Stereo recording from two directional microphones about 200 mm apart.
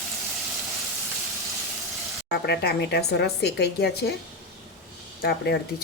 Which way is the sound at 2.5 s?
55° left (ahead or behind).